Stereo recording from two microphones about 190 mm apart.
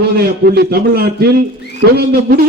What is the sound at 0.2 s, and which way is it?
A man's voice, 55° right (ahead or behind).